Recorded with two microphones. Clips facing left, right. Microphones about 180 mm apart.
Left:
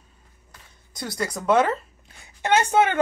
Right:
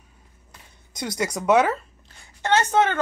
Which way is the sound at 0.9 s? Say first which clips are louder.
Right 2 dB; 20° right (ahead or behind).